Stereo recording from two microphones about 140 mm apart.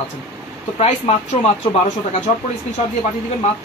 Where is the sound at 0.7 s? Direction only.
50° left (ahead or behind).